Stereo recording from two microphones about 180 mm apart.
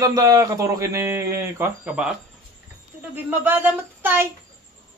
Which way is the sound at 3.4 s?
10° right (ahead or behind).